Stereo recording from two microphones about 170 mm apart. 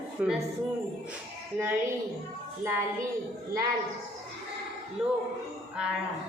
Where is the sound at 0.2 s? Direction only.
5° right (ahead or behind).